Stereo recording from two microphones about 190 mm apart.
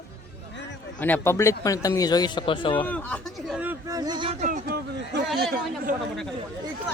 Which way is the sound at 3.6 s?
15° right (ahead or behind).